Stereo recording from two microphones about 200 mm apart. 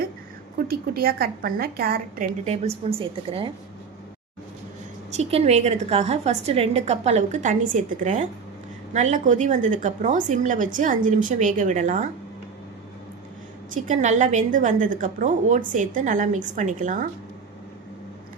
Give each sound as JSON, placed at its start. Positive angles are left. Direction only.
{"t": 0.7, "sound": "a woman's voice", "side_deg": -50}
{"t": 5.1, "sound": "a woman's voice", "side_deg": -35}
{"t": 13.7, "sound": "a woman's voice", "side_deg": -40}